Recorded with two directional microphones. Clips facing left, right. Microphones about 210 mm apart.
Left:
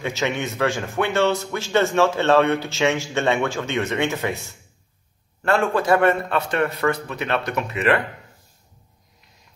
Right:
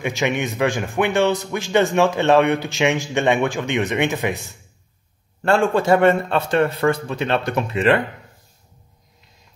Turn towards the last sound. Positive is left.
turn(degrees=-30)  # may be behind; listen again after turning